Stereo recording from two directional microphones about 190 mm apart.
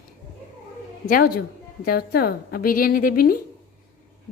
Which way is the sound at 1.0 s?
50° left (ahead or behind).